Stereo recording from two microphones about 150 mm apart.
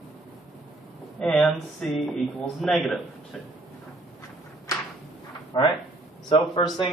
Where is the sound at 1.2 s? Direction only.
5° left (ahead or behind).